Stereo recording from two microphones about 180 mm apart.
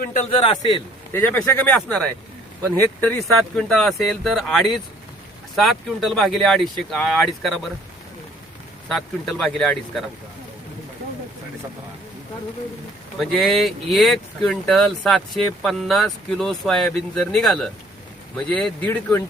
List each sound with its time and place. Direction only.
0.0 s speech: 45° left (ahead or behind)
1.1 s speech: 10° left (ahead or behind)
8.9 s speech: centre (ahead or behind)
13.1 s speech: 5° left (ahead or behind)